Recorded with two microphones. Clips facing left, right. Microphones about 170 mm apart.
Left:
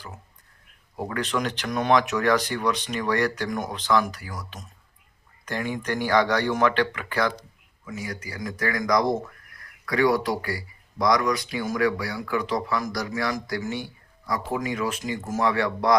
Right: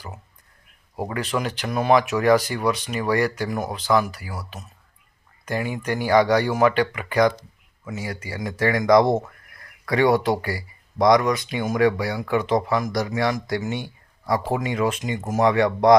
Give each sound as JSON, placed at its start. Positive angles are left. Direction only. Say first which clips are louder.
{"t": 0.9, "sound": "speech", "louder": "right 2 dB", "side_deg": -10}
{"t": 7.9, "sound": "speech", "louder": "right 3 dB", "side_deg": -30}